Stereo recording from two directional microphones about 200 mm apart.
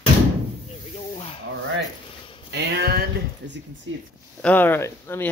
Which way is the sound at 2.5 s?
50° right (ahead or behind).